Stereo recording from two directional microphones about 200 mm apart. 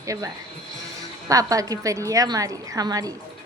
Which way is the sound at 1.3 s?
15° right (ahead or behind).